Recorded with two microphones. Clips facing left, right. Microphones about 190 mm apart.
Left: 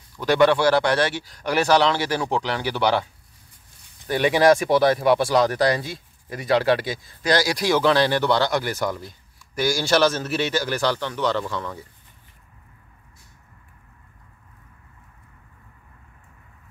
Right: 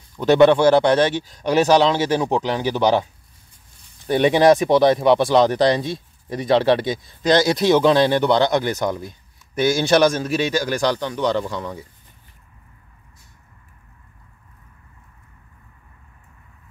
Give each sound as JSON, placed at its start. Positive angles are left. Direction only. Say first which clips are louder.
{"t": 0.1, "sound": "speech", "louder": "right 5 dB", "side_deg": -20}
{"t": 4.1, "sound": "a man's voice", "louder": "right 3 dB", "side_deg": -25}